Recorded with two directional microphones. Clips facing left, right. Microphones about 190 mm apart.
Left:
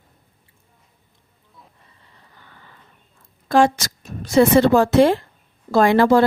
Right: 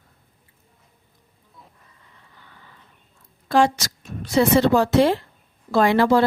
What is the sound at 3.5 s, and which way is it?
A woman's voice, 50° left (ahead or behind).